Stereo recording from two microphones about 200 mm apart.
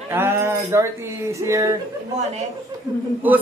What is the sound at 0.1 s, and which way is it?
A man's voice, 10° right (ahead or behind).